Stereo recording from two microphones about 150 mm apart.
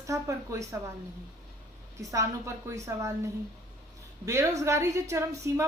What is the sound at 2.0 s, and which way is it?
A woman's voice, 20° right (ahead or behind).